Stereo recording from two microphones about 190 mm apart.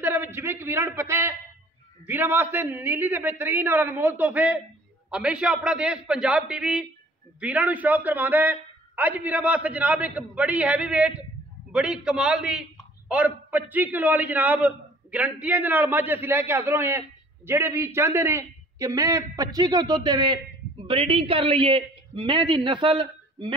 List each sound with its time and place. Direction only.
0.0 s a man's voice: 10° right (ahead or behind); by 23.5 s 25° right (ahead or behind)